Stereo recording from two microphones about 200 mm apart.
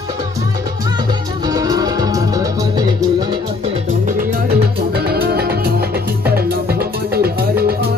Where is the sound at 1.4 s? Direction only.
20° right (ahead or behind).